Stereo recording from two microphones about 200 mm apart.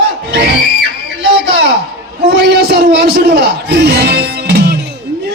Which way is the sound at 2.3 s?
55° right (ahead or behind).